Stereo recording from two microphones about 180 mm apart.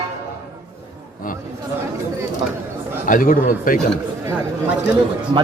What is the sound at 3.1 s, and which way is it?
Speech, 50° left (ahead or behind).